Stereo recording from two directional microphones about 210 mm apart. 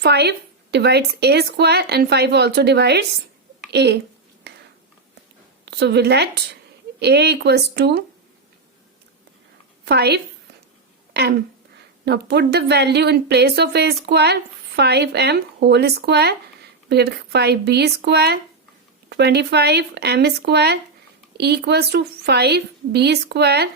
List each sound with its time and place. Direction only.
0.0 s speech: 50° right (ahead or behind)
5.6 s a woman's voice: 55° right (ahead or behind)
9.8 s a woman's voice: 50° right (ahead or behind)